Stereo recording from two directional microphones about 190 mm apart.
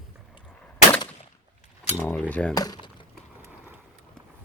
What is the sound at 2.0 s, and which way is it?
Speech, 5° left (ahead or behind).